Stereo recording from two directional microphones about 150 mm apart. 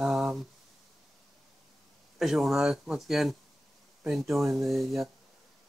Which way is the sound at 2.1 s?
Centre (ahead or behind).